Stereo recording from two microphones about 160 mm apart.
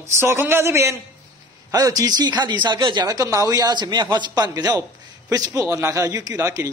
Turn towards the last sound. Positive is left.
turn(degrees=-20)  # may be behind; listen again after turning